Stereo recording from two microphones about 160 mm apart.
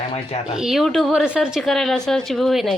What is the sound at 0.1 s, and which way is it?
Speech, 40° left (ahead or behind).